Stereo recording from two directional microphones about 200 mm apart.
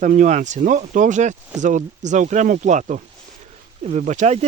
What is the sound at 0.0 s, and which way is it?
Speech, 40° right (ahead or behind).